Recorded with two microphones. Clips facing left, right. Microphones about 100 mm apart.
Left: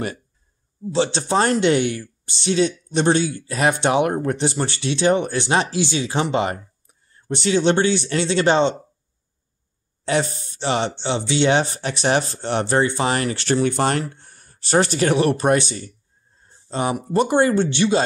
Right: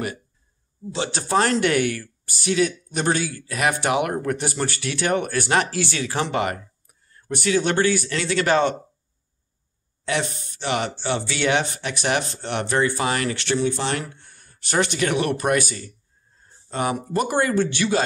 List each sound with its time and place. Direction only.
0.9 s speech: 30° left (ahead or behind)
10.0 s speech: 35° left (ahead or behind)
13.6 s speech: 50° left (ahead or behind)
13.9 s speech: 35° left (ahead or behind)